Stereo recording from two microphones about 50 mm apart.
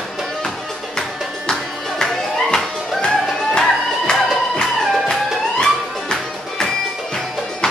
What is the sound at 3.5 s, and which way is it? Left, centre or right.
Music, centre.